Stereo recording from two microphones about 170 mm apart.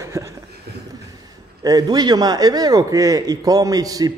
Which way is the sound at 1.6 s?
20° right (ahead or behind).